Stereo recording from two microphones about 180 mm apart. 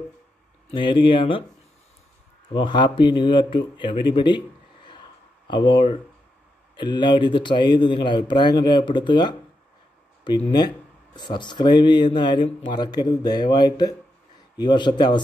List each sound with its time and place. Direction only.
0.7 s speech: 30° left (ahead or behind)
2.5 s speech: 25° left (ahead or behind)
5.5 s speech: 25° left (ahead or behind)